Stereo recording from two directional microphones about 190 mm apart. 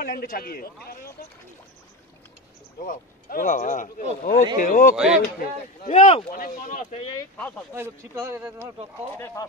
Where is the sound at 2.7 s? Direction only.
45° left (ahead or behind).